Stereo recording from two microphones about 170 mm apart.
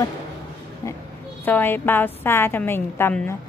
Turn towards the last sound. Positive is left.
turn(degrees=10)  # may be behind; listen again after turning